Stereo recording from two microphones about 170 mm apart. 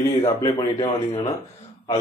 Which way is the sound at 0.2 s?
25° left (ahead or behind).